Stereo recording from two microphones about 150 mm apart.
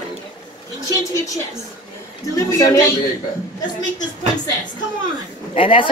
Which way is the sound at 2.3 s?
20° left (ahead or behind).